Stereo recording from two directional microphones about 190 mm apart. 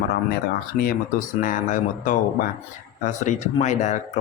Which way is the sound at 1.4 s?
45° left (ahead or behind).